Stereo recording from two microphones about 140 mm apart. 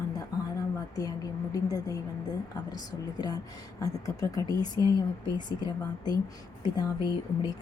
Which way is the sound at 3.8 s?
25° left (ahead or behind).